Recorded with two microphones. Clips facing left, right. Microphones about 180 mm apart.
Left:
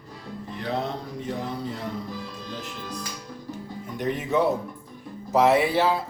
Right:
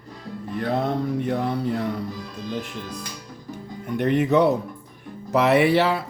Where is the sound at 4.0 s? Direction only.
65° right (ahead or behind).